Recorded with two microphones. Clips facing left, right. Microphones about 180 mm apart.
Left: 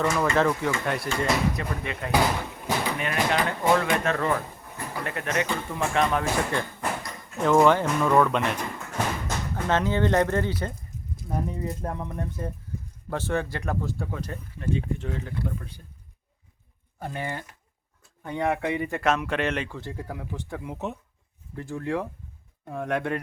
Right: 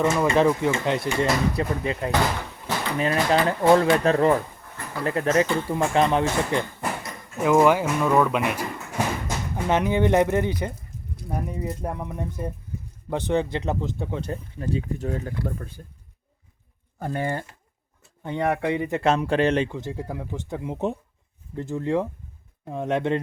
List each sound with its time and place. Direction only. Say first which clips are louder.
0.0 s speech: right 3 dB; 20° right (ahead or behind)
7.3 s speech: right 1 dB; 5° right (ahead or behind)
11.3 s music: even; 15° right (ahead or behind)
13.1 s speech: right 4 dB; 20° right (ahead or behind)
14.9 s speech: right 4 dB; 40° right (ahead or behind)
17.0 s speech: right 5 dB; 45° right (ahead or behind)
18.2 s speech: right 2 dB; 25° right (ahead or behind)
19.7 s speech: right 4 dB; 15° right (ahead or behind)